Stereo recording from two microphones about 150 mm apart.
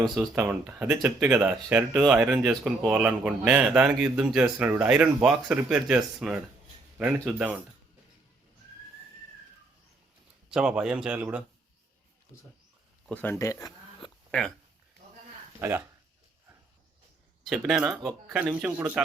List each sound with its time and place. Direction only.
0.3 s speech: 10° right (ahead or behind)
10.5 s speech: 5° right (ahead or behind)
13.1 s speech: 10° left (ahead or behind)
14.3 s speech: 5° left (ahead or behind)
15.6 s speech: 15° right (ahead or behind)
17.5 s speech: 5° right (ahead or behind)